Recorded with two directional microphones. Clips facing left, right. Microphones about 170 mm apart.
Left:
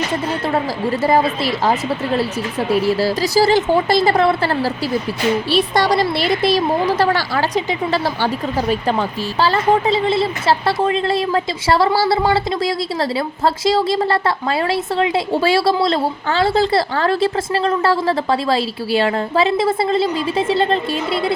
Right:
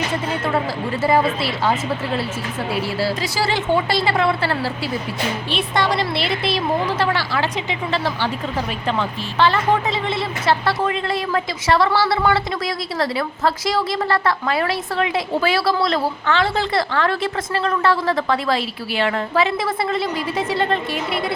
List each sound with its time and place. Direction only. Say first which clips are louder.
1.0 s a woman's voice: left 1 dB; 40° left (ahead or behind)